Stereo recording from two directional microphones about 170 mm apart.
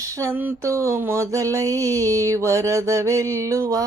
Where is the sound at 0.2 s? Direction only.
15° right (ahead or behind).